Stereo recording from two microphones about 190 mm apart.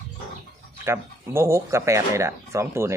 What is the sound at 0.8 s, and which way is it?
Speech, 15° right (ahead or behind).